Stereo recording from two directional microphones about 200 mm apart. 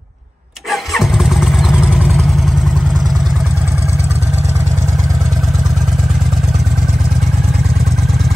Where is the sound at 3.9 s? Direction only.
30° right (ahead or behind).